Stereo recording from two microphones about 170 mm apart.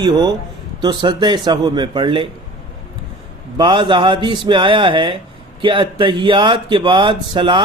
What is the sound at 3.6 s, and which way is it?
Speech, 25° right (ahead or behind).